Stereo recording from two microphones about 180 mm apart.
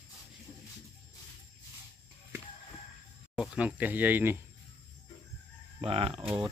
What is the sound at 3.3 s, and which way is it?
Speech, 5° right (ahead or behind).